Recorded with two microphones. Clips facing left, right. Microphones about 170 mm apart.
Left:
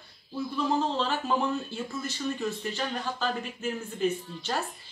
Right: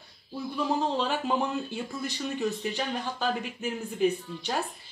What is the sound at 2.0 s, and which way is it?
Speech, 15° right (ahead or behind).